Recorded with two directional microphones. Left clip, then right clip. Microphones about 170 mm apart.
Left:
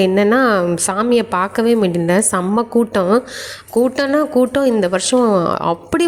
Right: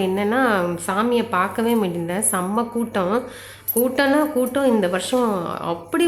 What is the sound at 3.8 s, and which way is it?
Speech, 40° left (ahead or behind).